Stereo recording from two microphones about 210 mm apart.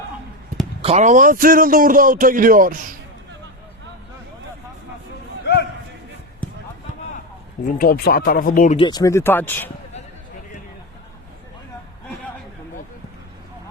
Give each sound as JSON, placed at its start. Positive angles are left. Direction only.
{"t": 0.8, "sound": "a man's voice", "side_deg": -30}
{"t": 7.8, "sound": "speech", "side_deg": 45}
{"t": 8.8, "sound": "speech", "side_deg": 20}